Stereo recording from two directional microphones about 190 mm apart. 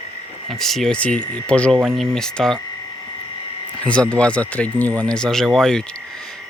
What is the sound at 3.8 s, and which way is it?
Speech, 5° left (ahead or behind).